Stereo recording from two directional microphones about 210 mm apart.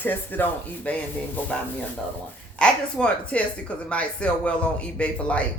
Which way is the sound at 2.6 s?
5° left (ahead or behind).